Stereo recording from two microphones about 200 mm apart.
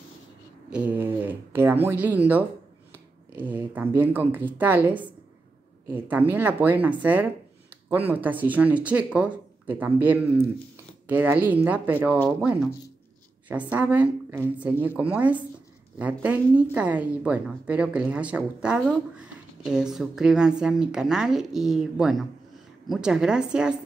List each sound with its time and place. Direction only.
0.7 s speech: 5° right (ahead or behind)
13.5 s a woman's voice: 10° right (ahead or behind)